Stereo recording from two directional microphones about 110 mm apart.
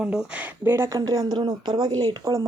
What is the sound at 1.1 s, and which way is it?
Speech, 40° right (ahead or behind).